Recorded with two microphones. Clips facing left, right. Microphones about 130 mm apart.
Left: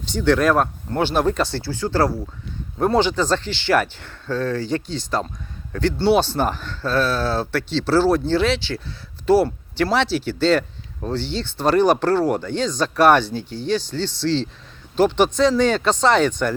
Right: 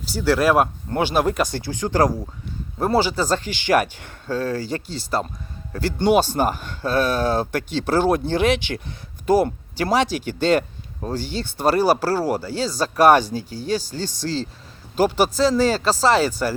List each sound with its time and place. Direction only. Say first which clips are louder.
0.0 s speech: left 1 dB; 5° right (ahead or behind)
7.5 s speech: left 2 dB; 50° right (ahead or behind)
8.4 s speech: right 1 dB; 15° right (ahead or behind)
14.2 s speech: left 5 dB; 40° right (ahead or behind)
14.9 s speech: left 2 dB; 5° right (ahead or behind)